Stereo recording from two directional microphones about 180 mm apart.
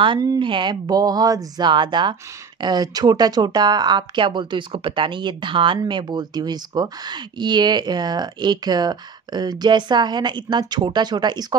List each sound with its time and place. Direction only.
0.0 s speech: 25° right (ahead or behind)